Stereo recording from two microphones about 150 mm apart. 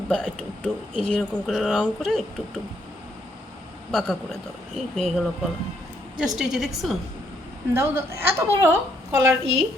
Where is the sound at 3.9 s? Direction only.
Centre (ahead or behind).